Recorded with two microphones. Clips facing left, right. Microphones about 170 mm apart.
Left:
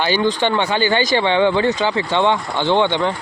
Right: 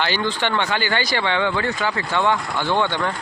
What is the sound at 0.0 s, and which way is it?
Speech, 15° left (ahead or behind).